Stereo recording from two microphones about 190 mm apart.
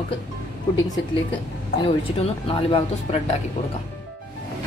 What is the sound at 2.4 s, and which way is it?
Speech, 30° left (ahead or behind).